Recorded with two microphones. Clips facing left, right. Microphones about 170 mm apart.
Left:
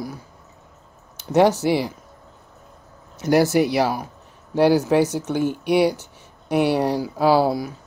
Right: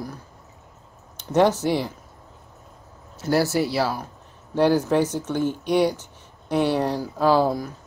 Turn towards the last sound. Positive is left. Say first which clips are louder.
# left 2 dB
turn(degrees=10)  # may be behind; listen again after turning